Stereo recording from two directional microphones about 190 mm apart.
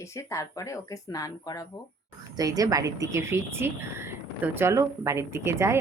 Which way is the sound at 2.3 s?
20° right (ahead or behind).